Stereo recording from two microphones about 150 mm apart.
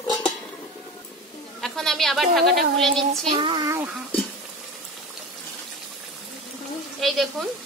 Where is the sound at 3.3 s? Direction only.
30° right (ahead or behind).